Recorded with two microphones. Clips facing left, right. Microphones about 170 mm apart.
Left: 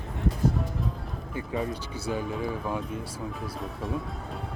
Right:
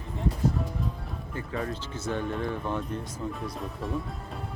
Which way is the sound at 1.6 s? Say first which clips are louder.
Left 1 dB; 10° left (ahead or behind).